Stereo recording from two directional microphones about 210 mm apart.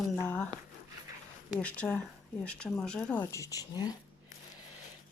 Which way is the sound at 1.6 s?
5° left (ahead or behind).